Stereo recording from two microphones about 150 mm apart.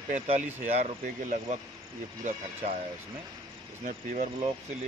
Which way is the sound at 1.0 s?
55° right (ahead or behind).